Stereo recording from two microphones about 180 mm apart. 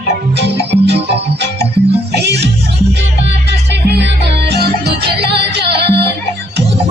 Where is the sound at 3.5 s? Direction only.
70° right (ahead or behind).